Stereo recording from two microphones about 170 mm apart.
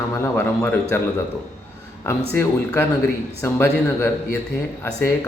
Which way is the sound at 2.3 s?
15° left (ahead or behind).